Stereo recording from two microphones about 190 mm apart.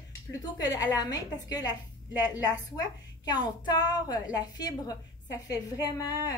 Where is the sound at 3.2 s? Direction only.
20° left (ahead or behind).